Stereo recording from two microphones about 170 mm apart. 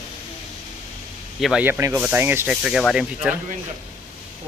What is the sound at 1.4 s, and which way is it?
Speech, 5° right (ahead or behind).